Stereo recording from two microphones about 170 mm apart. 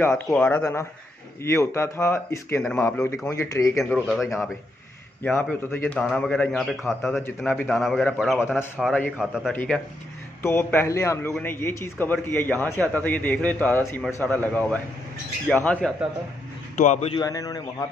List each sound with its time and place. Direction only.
0.0 s a man's voice: 5° left (ahead or behind)
5.2 s a man's voice: 5° left (ahead or behind)
9.5 s a man's voice: 10° left (ahead or behind)
16.7 s a man's voice: 45° left (ahead or behind)
17.1 s a man's voice: 20° left (ahead or behind)